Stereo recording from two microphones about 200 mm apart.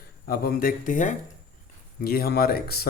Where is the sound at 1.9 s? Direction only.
50° left (ahead or behind).